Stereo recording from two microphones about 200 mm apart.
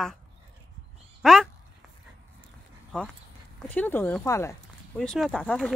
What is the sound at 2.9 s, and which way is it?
A woman's voice, 5° left (ahead or behind).